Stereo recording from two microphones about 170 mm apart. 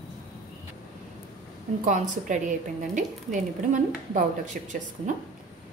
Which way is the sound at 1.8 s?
50° right (ahead or behind).